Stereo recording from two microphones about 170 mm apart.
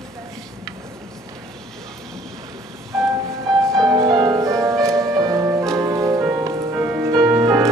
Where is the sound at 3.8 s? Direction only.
20° right (ahead or behind).